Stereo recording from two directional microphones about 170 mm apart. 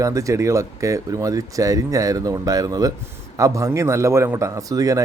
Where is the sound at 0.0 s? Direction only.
20° right (ahead or behind).